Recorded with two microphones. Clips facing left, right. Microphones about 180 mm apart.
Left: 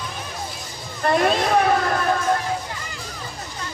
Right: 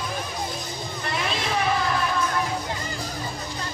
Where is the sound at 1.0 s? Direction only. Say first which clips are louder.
Left 11 dB; 50° left (ahead or behind).